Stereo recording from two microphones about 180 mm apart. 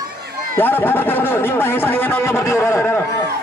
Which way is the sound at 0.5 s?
10° left (ahead or behind).